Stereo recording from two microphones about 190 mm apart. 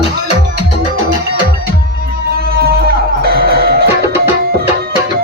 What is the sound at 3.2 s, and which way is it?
Music, 55° right (ahead or behind).